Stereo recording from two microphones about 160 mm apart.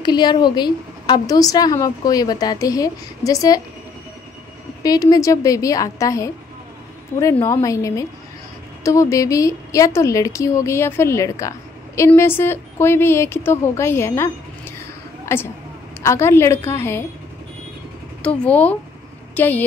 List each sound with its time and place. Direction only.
0.0 s a woman's voice: 30° left (ahead or behind)
4.8 s a woman's voice: 20° left (ahead or behind)
7.4 s a woman's voice: 20° left (ahead or behind)
18.2 s a woman's voice: 10° left (ahead or behind)